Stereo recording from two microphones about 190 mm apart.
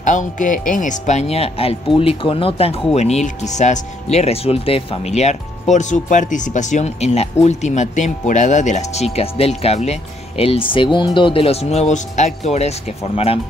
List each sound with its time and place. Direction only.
0.0 s speech: 40° left (ahead or behind)